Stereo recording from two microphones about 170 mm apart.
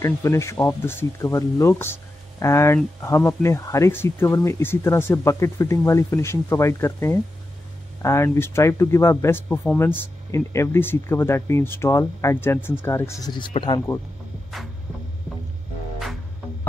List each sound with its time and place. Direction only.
0.0 s speech: 15° left (ahead or behind)